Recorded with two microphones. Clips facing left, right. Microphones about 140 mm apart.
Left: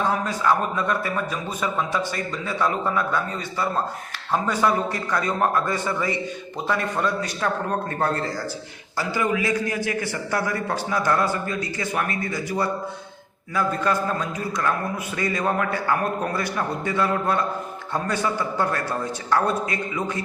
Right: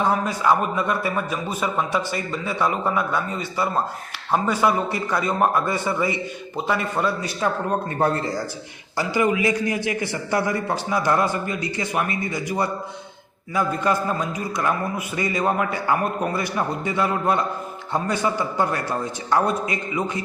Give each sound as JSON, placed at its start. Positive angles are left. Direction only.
{"t": 0.0, "sound": "a man's voice", "side_deg": -10}